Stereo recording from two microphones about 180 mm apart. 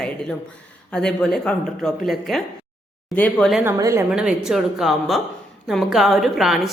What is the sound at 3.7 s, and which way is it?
Speech, 15° right (ahead or behind).